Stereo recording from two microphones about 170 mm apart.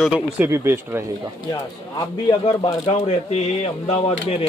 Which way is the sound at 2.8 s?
40° left (ahead or behind).